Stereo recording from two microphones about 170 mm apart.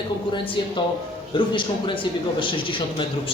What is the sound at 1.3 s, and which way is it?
A man's voice, 30° left (ahead or behind).